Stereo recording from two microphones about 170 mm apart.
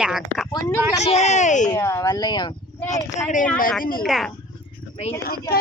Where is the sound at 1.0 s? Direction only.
40° left (ahead or behind).